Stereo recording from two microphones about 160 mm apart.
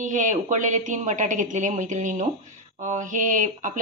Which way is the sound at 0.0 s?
50° right (ahead or behind).